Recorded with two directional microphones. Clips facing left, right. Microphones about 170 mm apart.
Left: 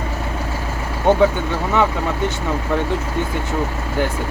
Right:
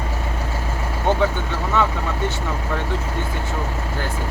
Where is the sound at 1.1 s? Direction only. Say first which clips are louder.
Left 5 dB; 15° left (ahead or behind).